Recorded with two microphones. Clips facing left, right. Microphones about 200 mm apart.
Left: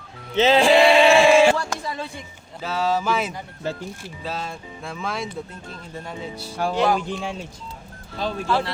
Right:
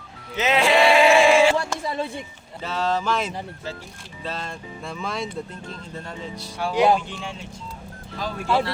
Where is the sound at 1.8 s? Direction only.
25° right (ahead or behind).